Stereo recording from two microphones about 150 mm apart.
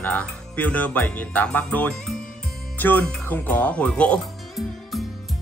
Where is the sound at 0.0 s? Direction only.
10° left (ahead or behind).